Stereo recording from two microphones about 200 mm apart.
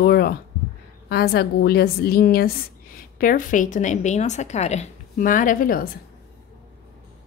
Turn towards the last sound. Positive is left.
turn(degrees=45)  # may be behind; listen again after turning